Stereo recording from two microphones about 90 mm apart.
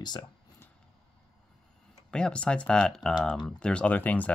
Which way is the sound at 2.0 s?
10° left (ahead or behind).